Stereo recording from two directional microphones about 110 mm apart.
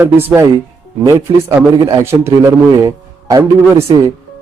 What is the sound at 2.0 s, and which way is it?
Speech, 20° right (ahead or behind).